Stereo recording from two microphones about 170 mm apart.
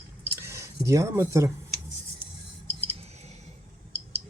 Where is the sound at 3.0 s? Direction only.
40° right (ahead or behind).